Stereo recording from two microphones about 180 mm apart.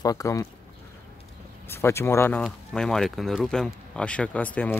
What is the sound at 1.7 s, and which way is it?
Speech, 15° left (ahead or behind).